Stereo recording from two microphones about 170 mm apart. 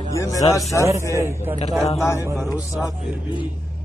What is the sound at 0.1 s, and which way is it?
Speech, 20° left (ahead or behind).